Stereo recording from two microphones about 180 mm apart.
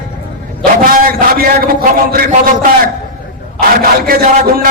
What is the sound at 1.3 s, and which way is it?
A man's voice, 55° right (ahead or behind).